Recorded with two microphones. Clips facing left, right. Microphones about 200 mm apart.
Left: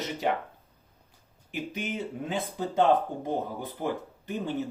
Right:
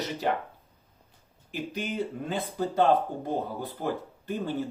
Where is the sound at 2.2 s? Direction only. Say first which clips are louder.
Right 1 dB; 20° left (ahead or behind).